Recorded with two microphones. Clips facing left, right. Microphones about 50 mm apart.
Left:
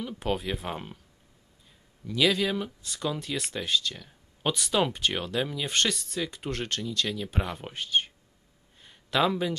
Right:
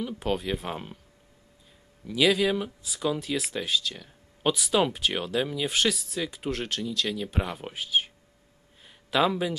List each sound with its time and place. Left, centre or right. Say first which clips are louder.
0.0 s speech: right 1 dB; centre
2.0 s speech: right 2 dB; centre
8.8 s a sound: right 1 dB; centre